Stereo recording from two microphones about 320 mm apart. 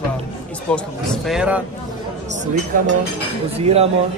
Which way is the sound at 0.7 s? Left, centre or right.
Centre.